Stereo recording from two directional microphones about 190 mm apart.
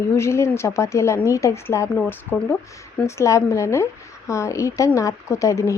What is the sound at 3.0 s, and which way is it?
A woman's voice, 15° left (ahead or behind).